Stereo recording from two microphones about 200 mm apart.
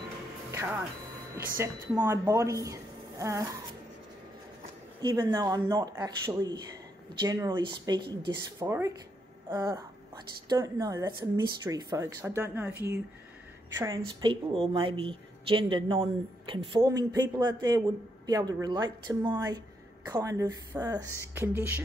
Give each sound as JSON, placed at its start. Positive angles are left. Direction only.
{"t": 0.5, "sound": "music", "side_deg": -15}
{"t": 1.6, "sound": "speech", "side_deg": -10}
{"t": 5.0, "sound": "speech", "side_deg": -20}